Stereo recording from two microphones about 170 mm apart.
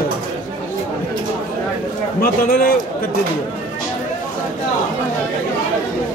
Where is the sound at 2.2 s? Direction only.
60° left (ahead or behind).